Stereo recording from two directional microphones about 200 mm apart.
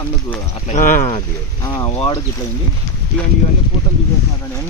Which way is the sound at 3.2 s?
5° left (ahead or behind).